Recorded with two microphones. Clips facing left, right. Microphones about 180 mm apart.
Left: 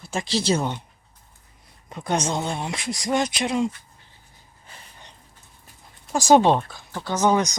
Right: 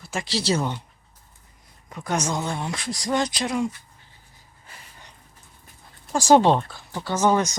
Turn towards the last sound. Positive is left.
turn(degrees=15)  # may be behind; listen again after turning